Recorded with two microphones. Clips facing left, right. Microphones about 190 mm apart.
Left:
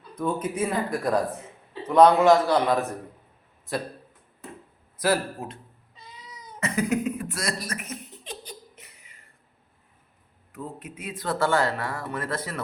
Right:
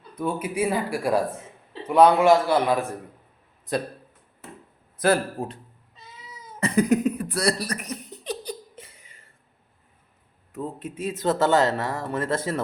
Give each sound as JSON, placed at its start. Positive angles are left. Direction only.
{"t": 0.2, "sound": "speech", "side_deg": -10}
{"t": 5.0, "sound": "speech", "side_deg": -30}
{"t": 6.0, "sound": "cat", "side_deg": -5}
{"t": 6.6, "sound": "a sound", "side_deg": -35}
{"t": 10.5, "sound": "speech", "side_deg": -25}